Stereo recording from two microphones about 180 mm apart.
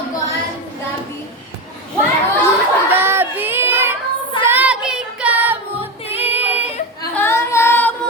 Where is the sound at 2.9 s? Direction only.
10° right (ahead or behind).